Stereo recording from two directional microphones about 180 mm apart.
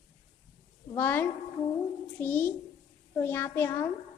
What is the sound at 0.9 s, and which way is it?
A child's voice, 10° left (ahead or behind).